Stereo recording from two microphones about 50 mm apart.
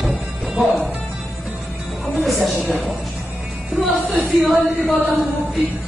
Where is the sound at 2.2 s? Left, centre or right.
Centre.